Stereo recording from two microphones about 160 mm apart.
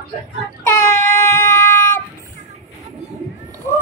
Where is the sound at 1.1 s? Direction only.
15° left (ahead or behind).